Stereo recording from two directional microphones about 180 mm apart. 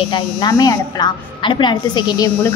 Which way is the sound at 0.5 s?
20° left (ahead or behind).